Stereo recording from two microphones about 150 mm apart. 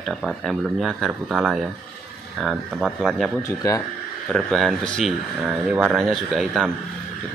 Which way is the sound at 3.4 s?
20° left (ahead or behind).